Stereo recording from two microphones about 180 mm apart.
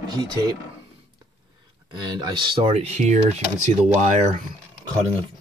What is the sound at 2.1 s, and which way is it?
Speech, 25° right (ahead or behind).